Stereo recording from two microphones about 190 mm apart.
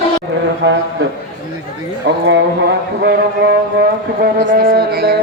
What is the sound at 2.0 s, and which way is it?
Music, 65° right (ahead or behind).